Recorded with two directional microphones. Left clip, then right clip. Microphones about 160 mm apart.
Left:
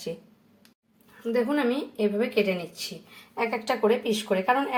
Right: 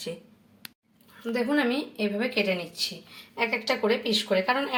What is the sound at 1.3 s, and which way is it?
Speech, 10° left (ahead or behind).